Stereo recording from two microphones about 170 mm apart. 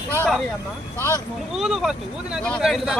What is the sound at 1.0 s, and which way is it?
Speech, 15° left (ahead or behind).